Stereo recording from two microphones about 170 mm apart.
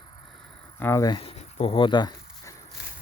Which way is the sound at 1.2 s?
35° left (ahead or behind).